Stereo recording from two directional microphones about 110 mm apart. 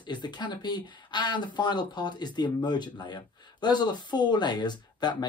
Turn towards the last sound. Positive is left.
turn(degrees=40)  # may be behind; listen again after turning